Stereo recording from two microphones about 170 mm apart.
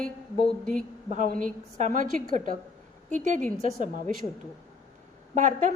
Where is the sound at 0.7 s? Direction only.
50° right (ahead or behind).